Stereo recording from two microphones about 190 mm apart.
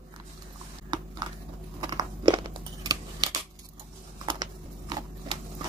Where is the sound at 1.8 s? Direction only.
20° right (ahead or behind).